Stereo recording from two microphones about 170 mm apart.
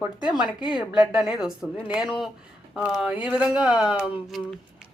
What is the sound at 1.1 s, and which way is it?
Speech, 5° right (ahead or behind).